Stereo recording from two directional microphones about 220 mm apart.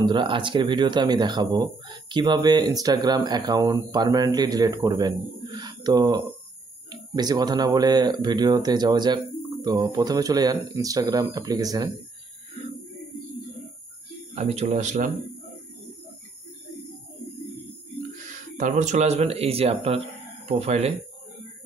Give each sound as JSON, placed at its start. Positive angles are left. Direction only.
{"t": 0.0, "sound": "speech", "side_deg": -20}
{"t": 14.3, "sound": "speech", "side_deg": -30}
{"t": 18.3, "sound": "speech", "side_deg": -35}